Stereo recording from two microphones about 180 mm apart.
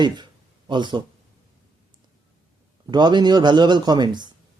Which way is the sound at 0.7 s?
25° right (ahead or behind).